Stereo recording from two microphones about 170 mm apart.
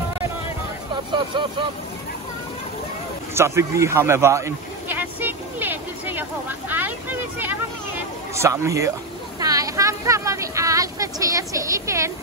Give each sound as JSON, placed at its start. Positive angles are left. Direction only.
{"t": 1.1, "sound": "speech", "side_deg": -30}
{"t": 3.3, "sound": "a sound", "side_deg": -15}
{"t": 6.7, "sound": "speech", "side_deg": -10}